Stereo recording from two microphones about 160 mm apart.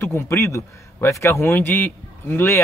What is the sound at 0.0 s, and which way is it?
A man's voice, 15° left (ahead or behind).